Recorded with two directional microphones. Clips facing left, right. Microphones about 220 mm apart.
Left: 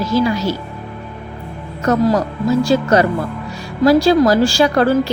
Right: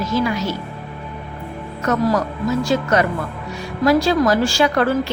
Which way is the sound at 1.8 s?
35° left (ahead or behind).